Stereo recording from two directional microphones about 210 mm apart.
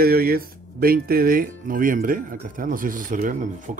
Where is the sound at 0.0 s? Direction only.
45° right (ahead or behind).